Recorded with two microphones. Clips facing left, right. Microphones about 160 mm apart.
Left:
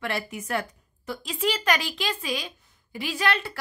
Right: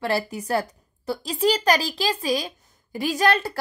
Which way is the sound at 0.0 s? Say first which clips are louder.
Right 6 dB; 35° right (ahead or behind).